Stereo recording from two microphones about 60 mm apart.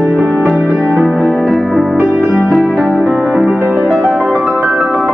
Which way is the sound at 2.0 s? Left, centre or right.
Centre.